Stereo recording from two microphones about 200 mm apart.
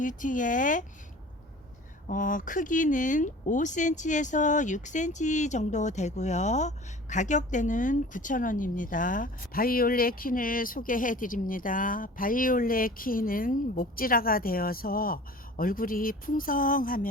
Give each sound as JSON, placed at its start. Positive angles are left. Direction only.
{"t": 0.0, "sound": "speech", "side_deg": 40}
{"t": 2.0, "sound": "speech", "side_deg": 40}